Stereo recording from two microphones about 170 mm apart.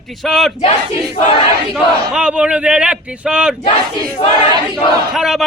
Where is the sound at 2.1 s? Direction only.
5° right (ahead or behind).